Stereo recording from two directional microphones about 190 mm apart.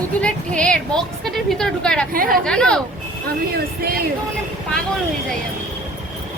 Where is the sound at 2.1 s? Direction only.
50° right (ahead or behind).